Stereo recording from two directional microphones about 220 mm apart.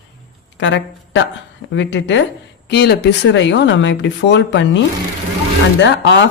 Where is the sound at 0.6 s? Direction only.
55° left (ahead or behind).